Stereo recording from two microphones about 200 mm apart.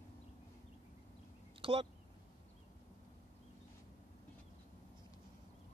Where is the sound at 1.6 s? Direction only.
25° right (ahead or behind).